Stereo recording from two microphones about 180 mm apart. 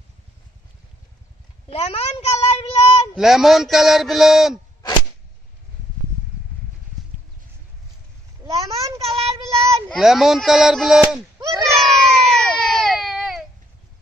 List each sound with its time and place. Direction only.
1.7 s child singing: 35° left (ahead or behind)
3.2 s speech: centre (ahead or behind)
8.5 s a sound: 20° right (ahead or behind)
9.0 s child singing: 35° right (ahead or behind)
9.8 s speech: centre (ahead or behind)
11.5 s baby cry: centre (ahead or behind)